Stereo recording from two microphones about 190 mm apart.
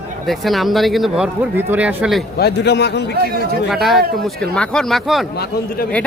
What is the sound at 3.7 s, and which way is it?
Speech, centre (ahead or behind).